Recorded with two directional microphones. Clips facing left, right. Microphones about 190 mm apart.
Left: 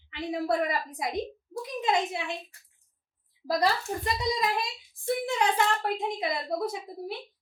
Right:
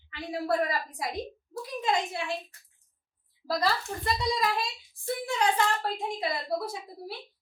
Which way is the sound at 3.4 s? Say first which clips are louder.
Left 2 dB; 15° left (ahead or behind).